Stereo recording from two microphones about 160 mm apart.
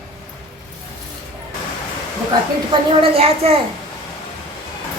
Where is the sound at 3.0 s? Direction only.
35° right (ahead or behind).